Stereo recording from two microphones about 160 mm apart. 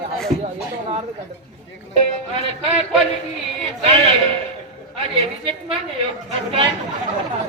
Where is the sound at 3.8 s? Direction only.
40° right (ahead or behind).